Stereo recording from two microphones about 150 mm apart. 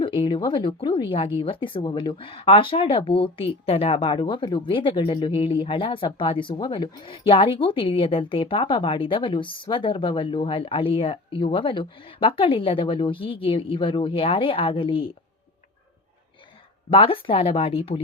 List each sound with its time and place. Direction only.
0.0 s speech: 35° left (ahead or behind)
16.9 s speech: 35° left (ahead or behind)